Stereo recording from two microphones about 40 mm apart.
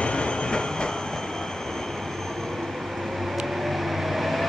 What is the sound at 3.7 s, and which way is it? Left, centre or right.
Vehicle, centre.